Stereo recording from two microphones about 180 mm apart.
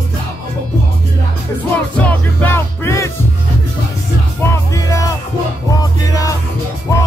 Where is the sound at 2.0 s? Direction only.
10° left (ahead or behind).